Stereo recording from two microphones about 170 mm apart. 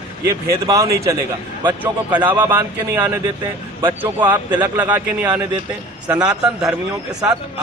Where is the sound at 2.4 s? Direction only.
15° right (ahead or behind).